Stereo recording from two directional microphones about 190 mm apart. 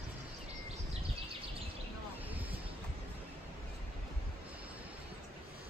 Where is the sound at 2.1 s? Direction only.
10° right (ahead or behind).